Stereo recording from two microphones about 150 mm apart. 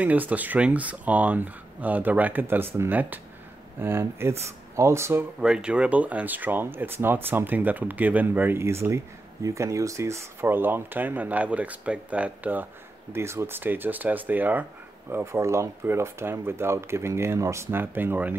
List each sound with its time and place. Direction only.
0.0 s speech: 10° right (ahead or behind)
5.4 s speech: 5° right (ahead or behind)